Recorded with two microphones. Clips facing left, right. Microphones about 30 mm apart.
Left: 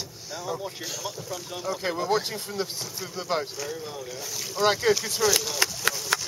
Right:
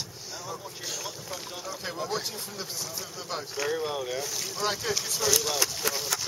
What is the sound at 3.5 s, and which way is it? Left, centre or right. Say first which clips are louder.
Speech: right 5 dB; right.